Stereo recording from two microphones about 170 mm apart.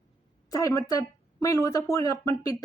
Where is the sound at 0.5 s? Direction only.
20° left (ahead or behind).